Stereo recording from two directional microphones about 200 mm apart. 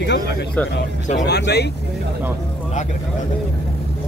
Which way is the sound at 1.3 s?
55° left (ahead or behind).